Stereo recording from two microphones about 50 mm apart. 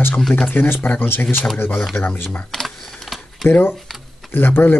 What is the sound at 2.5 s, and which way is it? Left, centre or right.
Typing, centre.